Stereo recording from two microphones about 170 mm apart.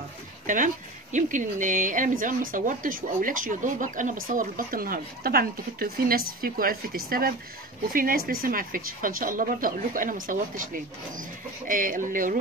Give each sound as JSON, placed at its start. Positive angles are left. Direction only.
{"t": 1.1, "sound": "speech", "side_deg": -50}